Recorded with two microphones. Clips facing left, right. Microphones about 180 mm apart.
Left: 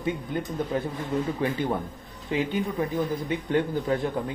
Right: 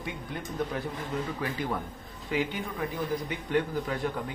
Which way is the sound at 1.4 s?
25° left (ahead or behind).